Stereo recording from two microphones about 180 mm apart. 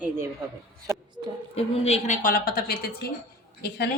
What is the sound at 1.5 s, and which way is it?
A woman's voice, 35° left (ahead or behind).